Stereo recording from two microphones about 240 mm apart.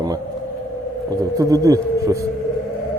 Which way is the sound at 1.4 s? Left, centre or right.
Centre.